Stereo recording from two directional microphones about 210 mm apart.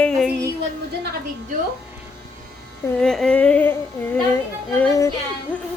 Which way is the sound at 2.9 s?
Centre (ahead or behind).